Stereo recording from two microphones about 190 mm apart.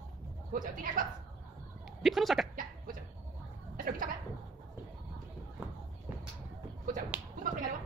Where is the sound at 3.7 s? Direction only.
45° right (ahead or behind).